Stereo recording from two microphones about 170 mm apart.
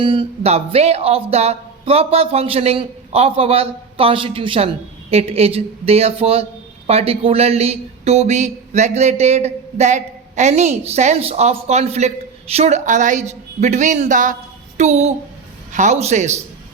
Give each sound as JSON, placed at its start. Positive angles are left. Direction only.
{"t": 0.0, "sound": "a man's voice", "side_deg": -30}